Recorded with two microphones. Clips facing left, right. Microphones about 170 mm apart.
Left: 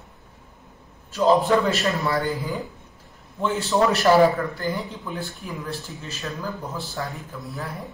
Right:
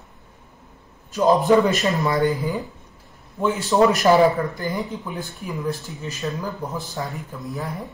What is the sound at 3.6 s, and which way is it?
Speech, 20° right (ahead or behind).